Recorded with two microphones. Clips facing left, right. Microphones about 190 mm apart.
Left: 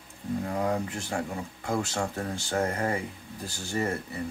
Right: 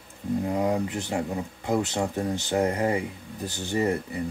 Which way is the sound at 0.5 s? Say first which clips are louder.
Right 3 dB; 20° right (ahead or behind).